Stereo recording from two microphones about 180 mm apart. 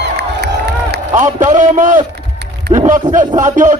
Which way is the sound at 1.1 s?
45° right (ahead or behind).